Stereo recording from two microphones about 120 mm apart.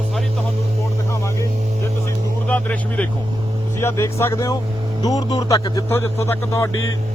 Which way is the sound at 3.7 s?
25° left (ahead or behind).